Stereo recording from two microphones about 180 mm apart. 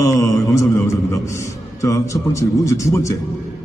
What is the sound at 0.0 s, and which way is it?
Mantra, 15° left (ahead or behind).